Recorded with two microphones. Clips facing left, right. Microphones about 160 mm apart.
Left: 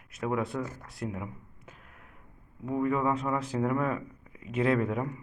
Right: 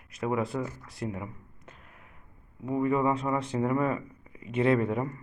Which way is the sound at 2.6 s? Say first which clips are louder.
Right 2 dB; centre (ahead or behind).